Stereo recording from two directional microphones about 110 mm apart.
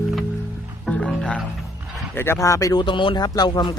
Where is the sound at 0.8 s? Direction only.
5° left (ahead or behind).